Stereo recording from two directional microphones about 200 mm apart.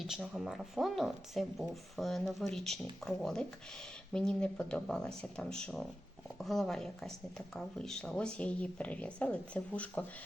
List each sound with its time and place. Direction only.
0.0 s speech: centre (ahead or behind)